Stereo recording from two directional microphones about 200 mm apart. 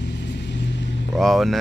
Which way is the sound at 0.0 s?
60° left (ahead or behind).